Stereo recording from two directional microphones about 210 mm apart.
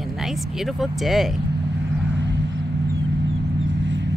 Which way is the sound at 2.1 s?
60° right (ahead or behind).